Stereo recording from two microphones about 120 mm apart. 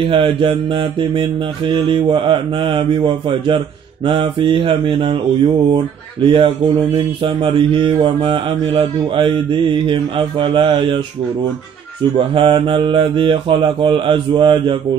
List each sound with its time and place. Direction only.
0.0 s mantra: 45° right (ahead or behind)
12.2 s mantra: 45° right (ahead or behind)